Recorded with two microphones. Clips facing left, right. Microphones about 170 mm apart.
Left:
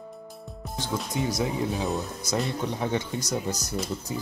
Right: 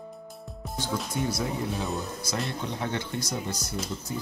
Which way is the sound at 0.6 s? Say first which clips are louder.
Even; centre (ahead or behind).